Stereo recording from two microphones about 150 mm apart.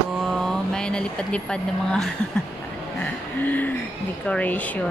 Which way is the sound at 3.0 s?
10° left (ahead or behind).